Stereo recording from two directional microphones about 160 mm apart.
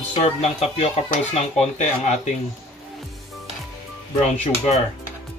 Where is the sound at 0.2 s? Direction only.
40° left (ahead or behind).